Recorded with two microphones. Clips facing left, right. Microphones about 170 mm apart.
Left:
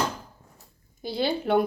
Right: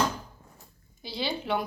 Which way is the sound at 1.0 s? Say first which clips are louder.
Left 6 dB; 50° left (ahead or behind).